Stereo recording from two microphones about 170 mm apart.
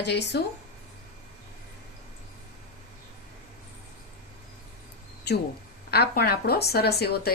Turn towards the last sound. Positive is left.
turn(degrees=70)  # may be behind; listen again after turning